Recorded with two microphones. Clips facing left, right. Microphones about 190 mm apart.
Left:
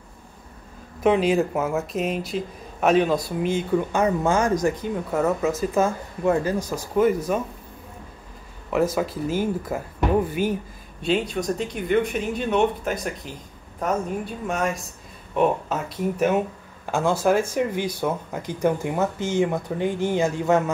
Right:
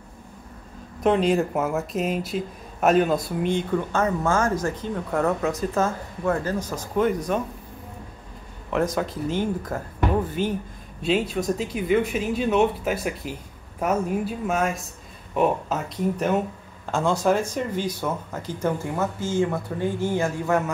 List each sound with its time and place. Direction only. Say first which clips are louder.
1.0 s speech: left 1 dB; centre (ahead or behind)
3.9 s speech: left 1 dB; 15° left (ahead or behind)
8.6 s speech: left 2 dB; 5° left (ahead or behind)
11.0 s speech: even; centre (ahead or behind); by 20.7 s 20° left (ahead or behind)